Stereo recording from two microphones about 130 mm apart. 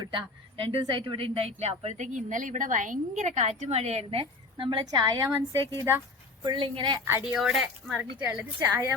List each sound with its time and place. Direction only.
0.0 s a woman's voice: 40° right (ahead or behind); by 6.0 s 25° right (ahead or behind)
6.4 s a woman's voice: 35° right (ahead or behind)
7.1 s a woman's voice: 15° right (ahead or behind)
7.3 s a woman's voice: 5° right (ahead or behind)
8.3 s a woman's voice: 15° right (ahead or behind)